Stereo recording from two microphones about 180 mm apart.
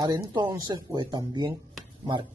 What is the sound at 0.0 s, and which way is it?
A man's voice, 20° right (ahead or behind).